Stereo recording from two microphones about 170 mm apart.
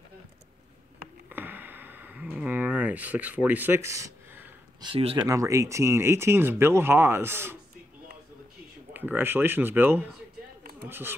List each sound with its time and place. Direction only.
1.3 s a sound: 10° right (ahead or behind)
4.9 s speech: 35° right (ahead or behind)
5.3 s speech: 20° right (ahead or behind)
8.9 s speech: 10° right (ahead or behind)
10.6 s a sound: 60° right (ahead or behind)
10.9 s speech: 15° right (ahead or behind)